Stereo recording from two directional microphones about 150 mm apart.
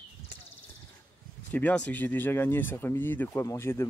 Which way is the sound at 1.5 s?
10° left (ahead or behind).